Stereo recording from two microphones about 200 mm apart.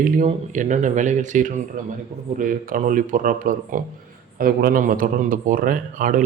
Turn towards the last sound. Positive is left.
turn(degrees=-40)  # may be behind; listen again after turning